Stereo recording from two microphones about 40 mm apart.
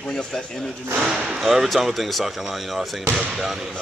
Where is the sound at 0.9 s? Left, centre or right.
Right.